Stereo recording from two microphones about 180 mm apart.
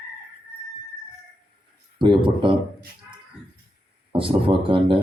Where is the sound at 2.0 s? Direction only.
25° right (ahead or behind).